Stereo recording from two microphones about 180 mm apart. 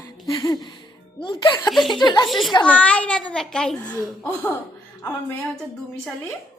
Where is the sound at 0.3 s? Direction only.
20° left (ahead or behind).